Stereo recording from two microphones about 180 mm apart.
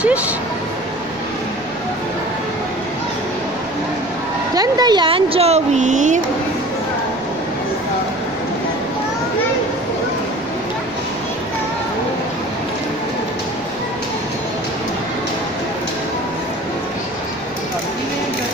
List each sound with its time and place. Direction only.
4.6 s speech: 20° right (ahead or behind); by 6.2 s 45° right (ahead or behind)